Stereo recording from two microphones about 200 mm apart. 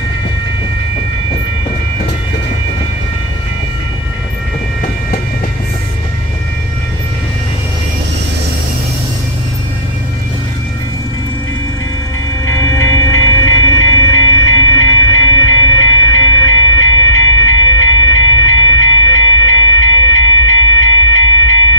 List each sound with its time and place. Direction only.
12.4 s train: 15° left (ahead or behind)
14.8 s train: 90° left